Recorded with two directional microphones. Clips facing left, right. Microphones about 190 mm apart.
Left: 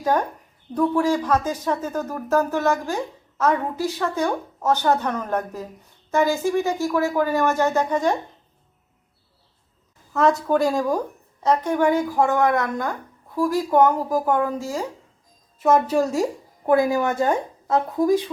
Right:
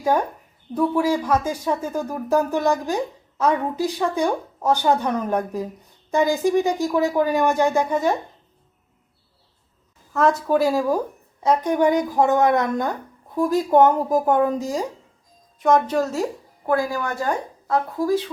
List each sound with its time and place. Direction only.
0.0 s speech: 10° right (ahead or behind)
10.1 s speech: centre (ahead or behind); by 14.8 s 15° right (ahead or behind)
15.6 s a woman's voice: 5° left (ahead or behind)